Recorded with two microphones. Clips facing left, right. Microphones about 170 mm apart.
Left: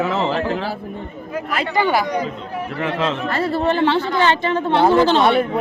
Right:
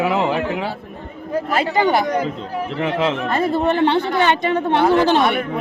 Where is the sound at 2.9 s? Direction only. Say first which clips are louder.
Right 2 dB; 15° right (ahead or behind).